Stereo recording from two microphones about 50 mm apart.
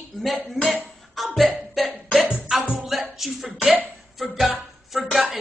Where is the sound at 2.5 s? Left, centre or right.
Centre.